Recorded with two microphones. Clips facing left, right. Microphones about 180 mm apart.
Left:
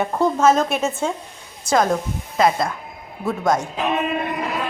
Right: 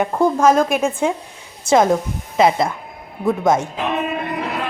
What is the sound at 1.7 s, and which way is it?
Speech, 25° right (ahead or behind).